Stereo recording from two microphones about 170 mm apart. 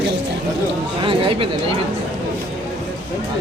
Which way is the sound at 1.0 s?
30° right (ahead or behind).